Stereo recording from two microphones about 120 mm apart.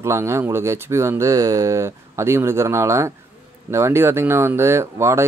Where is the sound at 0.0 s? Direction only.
25° right (ahead or behind).